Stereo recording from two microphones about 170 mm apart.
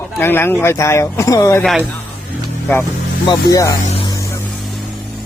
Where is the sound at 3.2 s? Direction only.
20° left (ahead or behind).